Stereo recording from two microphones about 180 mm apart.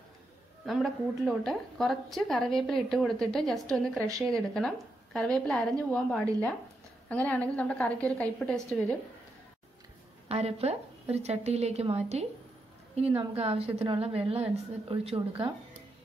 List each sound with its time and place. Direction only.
0.7 s a woman's voice: centre (ahead or behind)
10.2 s a woman's voice: 35° right (ahead or behind)
13.4 s a woman's voice: 35° right (ahead or behind)